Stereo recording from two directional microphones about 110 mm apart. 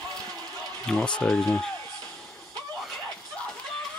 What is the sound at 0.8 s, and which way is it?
Speech, 5° left (ahead or behind).